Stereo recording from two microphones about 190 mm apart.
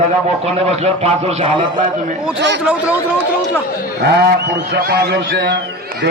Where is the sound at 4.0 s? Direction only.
60° right (ahead or behind).